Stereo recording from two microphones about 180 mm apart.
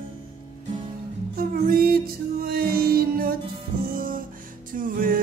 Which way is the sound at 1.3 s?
55° right (ahead or behind).